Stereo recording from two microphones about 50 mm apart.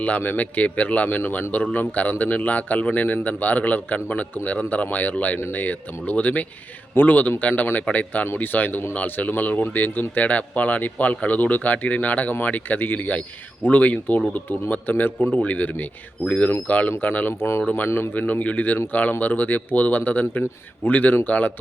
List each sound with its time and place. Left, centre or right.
0.2 s speech: left
17.8 s speech: left
18.1 s speech: left